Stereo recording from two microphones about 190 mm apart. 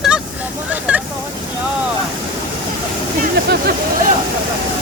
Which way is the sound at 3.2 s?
55° right (ahead or behind).